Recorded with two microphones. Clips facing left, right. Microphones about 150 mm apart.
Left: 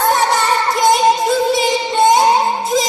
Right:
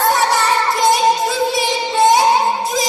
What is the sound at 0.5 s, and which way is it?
Child singing, centre (ahead or behind).